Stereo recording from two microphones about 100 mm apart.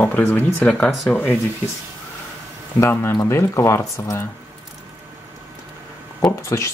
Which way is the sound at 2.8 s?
25° left (ahead or behind).